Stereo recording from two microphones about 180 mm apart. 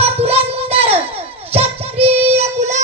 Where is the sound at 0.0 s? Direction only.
35° right (ahead or behind).